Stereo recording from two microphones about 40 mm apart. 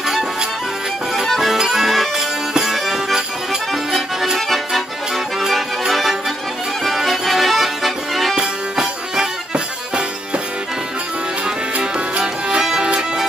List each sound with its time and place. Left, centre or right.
1.2 s music: centre
1.5 s music: centre
3.7 s accordion: centre
5.5 s music: centre
8.4 s music: centre
11.7 s music: right